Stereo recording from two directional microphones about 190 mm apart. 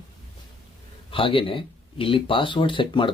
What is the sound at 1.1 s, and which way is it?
Speech, 30° left (ahead or behind).